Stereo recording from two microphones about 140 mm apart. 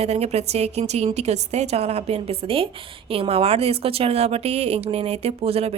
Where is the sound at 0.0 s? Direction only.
50° right (ahead or behind).